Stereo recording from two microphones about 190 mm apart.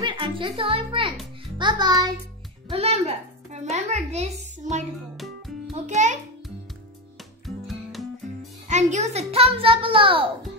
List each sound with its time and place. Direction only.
0.0 s a child's voice: 25° right (ahead or behind)
2.7 s a child's voice: 30° right (ahead or behind)
5.9 s a child's voice: 40° right (ahead or behind)
7.4 s music: centre (ahead or behind)
8.6 s a child's voice: 40° right (ahead or behind)